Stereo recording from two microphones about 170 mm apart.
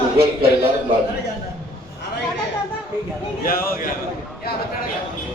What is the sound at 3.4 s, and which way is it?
Speech, 60° left (ahead or behind).